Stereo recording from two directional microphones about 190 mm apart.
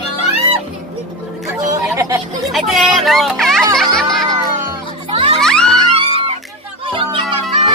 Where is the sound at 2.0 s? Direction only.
20° right (ahead or behind).